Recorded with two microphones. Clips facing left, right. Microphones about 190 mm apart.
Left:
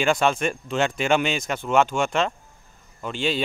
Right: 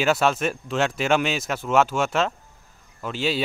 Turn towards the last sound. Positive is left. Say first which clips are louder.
# even
turn(degrees=-5)  # may be behind; listen again after turning